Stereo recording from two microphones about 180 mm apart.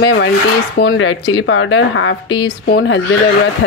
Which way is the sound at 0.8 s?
90° left.